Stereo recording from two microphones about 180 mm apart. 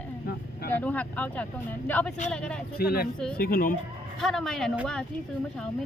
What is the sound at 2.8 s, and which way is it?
Speech, 55° left (ahead or behind).